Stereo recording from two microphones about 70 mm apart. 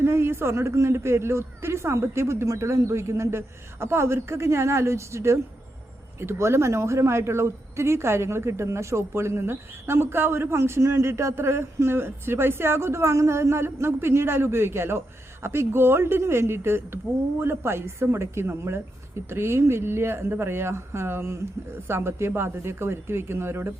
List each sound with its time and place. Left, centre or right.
0.0 s a woman's voice: right